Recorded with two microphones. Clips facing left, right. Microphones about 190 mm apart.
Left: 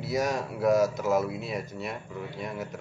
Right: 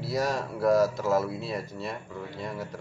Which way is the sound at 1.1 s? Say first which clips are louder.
Even; centre (ahead or behind).